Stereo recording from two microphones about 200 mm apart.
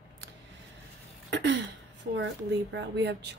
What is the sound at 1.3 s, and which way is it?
Speech, 60° right (ahead or behind).